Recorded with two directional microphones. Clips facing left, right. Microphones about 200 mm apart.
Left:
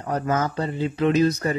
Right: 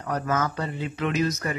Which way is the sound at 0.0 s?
30° left (ahead or behind).